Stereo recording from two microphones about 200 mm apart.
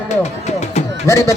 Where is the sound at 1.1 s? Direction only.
15° left (ahead or behind).